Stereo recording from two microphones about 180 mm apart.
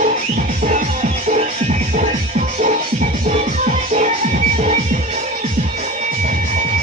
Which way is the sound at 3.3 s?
40° right (ahead or behind).